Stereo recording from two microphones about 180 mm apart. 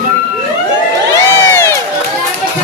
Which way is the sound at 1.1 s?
15° left (ahead or behind).